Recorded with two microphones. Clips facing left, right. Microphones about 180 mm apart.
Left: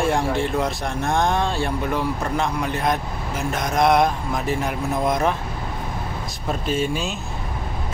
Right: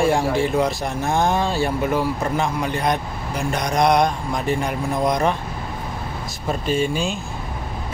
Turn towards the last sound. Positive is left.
turn(degrees=0)  # may be behind; listen again after turning